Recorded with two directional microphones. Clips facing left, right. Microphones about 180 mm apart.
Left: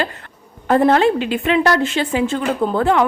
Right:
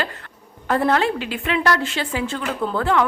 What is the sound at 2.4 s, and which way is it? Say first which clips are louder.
Speech: left 5 dB; 30° left (ahead or behind).